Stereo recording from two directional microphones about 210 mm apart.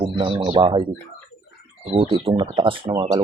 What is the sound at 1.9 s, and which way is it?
Speech, 25° right (ahead or behind).